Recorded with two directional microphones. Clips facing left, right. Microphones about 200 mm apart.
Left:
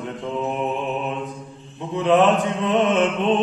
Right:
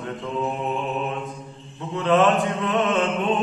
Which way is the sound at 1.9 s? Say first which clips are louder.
Left 2 dB; 15° left (ahead or behind).